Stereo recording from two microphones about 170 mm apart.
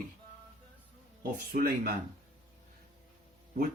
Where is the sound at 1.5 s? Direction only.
60° right (ahead or behind).